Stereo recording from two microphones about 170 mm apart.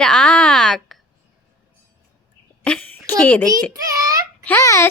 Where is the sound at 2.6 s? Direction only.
10° left (ahead or behind).